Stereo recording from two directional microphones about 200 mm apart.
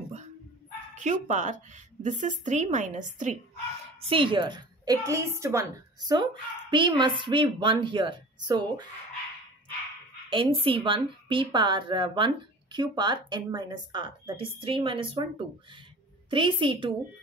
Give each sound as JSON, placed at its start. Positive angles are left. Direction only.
{"t": 0.9, "sound": "a woman's voice", "side_deg": -35}
{"t": 4.0, "sound": "a woman's voice", "side_deg": -25}
{"t": 10.3, "sound": "a woman's voice", "side_deg": -25}